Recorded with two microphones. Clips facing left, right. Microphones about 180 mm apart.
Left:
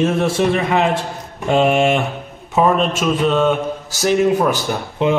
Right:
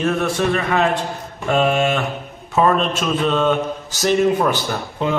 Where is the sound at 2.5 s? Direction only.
10° left (ahead or behind).